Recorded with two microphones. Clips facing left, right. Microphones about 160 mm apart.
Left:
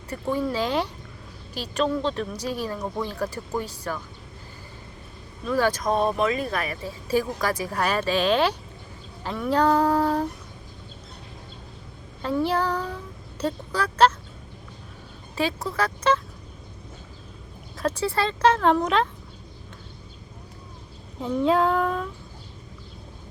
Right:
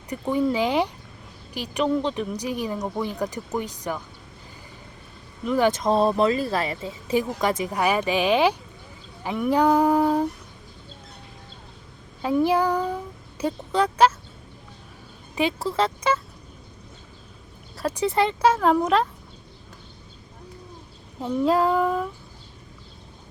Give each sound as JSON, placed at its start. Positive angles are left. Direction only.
{"t": 0.1, "sound": "speech", "side_deg": -15}
{"t": 5.5, "sound": "speech", "side_deg": -20}
{"t": 12.2, "sound": "speech", "side_deg": -15}
{"t": 15.4, "sound": "speech", "side_deg": -25}
{"t": 17.7, "sound": "speech", "side_deg": -15}
{"t": 21.2, "sound": "child singing", "side_deg": 0}